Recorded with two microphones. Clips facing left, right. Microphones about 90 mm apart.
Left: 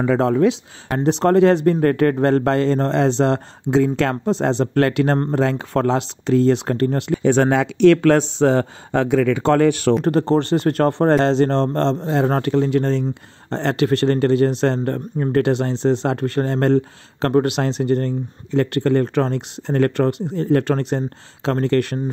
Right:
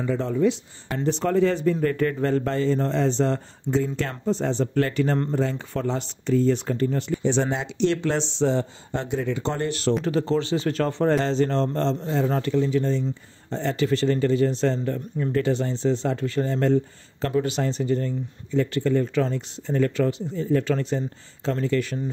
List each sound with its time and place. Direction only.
0.0 s speech: 80° left
5.3 s speech: 80° left
7.2 s a man's voice: 60° left (ahead or behind)